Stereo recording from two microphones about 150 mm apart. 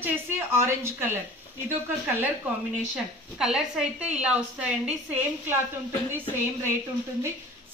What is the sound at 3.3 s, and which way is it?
A woman's voice, 5° right (ahead or behind).